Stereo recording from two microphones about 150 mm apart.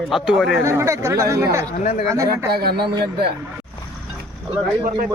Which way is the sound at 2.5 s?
90° right.